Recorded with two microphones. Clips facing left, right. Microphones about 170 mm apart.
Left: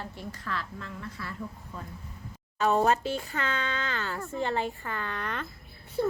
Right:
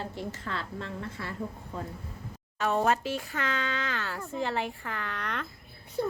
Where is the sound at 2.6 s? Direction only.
Centre (ahead or behind).